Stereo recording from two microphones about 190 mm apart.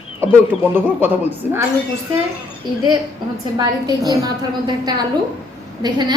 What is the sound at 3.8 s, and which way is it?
A woman's voice, 20° right (ahead or behind).